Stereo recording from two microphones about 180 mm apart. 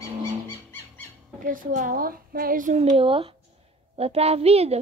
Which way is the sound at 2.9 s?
30° right (ahead or behind).